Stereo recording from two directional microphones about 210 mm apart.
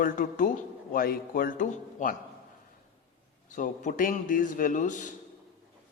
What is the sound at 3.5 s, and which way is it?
Speech, 40° left (ahead or behind).